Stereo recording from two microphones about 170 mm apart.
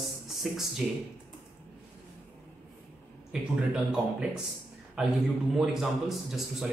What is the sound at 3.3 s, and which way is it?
A man's voice, 5° right (ahead or behind).